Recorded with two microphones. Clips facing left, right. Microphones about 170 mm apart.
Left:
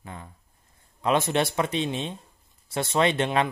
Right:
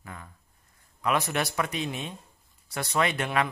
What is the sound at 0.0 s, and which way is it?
Speech, 25° left (ahead or behind).